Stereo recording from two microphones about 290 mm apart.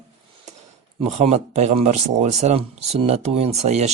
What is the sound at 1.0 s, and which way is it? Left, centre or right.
Speech, right.